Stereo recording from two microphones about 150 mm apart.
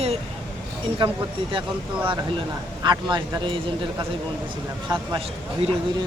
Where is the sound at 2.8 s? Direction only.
30° right (ahead or behind).